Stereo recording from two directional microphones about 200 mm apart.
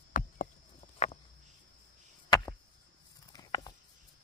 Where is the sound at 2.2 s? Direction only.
20° left (ahead or behind).